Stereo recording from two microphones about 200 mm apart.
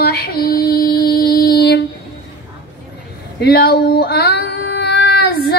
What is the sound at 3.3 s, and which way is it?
Child singing, 55° left (ahead or behind).